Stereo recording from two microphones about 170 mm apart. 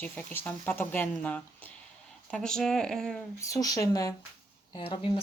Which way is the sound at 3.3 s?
20° left (ahead or behind).